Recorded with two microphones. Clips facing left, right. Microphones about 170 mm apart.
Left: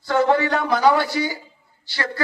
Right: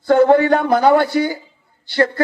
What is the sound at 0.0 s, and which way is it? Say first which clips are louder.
A man's voice: right 7 dB; 55° right (ahead or behind).